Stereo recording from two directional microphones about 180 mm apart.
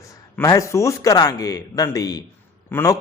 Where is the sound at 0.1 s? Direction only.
15° left (ahead or behind).